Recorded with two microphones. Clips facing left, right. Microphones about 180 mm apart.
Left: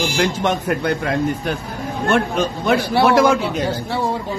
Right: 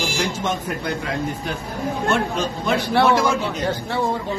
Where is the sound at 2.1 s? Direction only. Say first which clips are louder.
Left 7 dB; 60° left (ahead or behind).